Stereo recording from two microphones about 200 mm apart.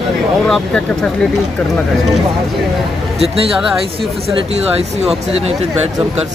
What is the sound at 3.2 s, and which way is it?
Speech, 30° right (ahead or behind).